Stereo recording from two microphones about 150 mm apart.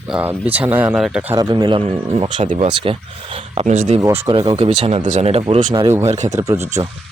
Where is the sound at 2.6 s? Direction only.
35° right (ahead or behind).